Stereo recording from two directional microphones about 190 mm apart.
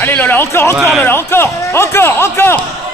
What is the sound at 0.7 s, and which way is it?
Speech, 5° right (ahead or behind).